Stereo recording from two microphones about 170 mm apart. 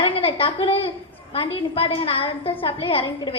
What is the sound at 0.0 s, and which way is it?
A woman's voice, 30° left (ahead or behind).